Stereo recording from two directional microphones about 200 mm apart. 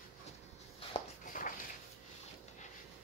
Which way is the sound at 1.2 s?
40° left (ahead or behind).